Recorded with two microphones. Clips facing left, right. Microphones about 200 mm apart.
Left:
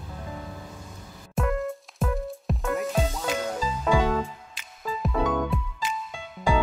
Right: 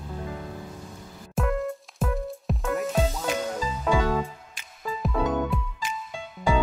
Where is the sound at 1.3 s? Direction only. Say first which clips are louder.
Even; centre (ahead or behind).